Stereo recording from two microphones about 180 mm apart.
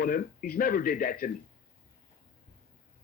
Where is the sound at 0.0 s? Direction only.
50° left (ahead or behind).